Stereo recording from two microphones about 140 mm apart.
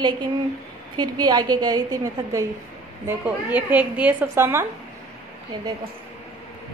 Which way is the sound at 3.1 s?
10° right (ahead or behind).